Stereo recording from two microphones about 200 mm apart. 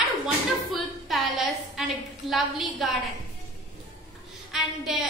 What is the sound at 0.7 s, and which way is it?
A woman's voice, centre (ahead or behind).